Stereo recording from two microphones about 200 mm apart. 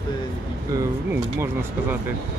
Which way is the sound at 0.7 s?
10° right (ahead or behind).